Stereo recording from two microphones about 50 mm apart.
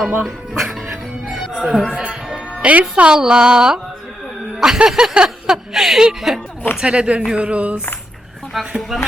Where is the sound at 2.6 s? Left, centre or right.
Right.